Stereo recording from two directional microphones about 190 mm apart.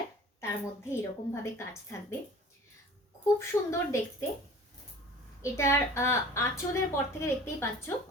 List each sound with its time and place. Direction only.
0.9 s a woman's voice: 15° left (ahead or behind)
3.3 s a woman's voice: 15° left (ahead or behind)
5.4 s a woman's voice: 15° left (ahead or behind)